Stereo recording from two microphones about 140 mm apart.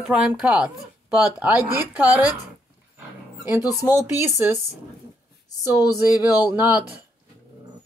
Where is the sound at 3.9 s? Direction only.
10° right (ahead or behind).